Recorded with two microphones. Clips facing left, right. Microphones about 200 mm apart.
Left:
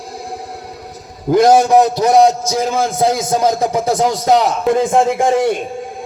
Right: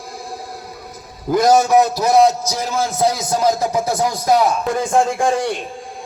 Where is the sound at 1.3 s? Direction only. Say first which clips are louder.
Left 3 dB; 30° left (ahead or behind).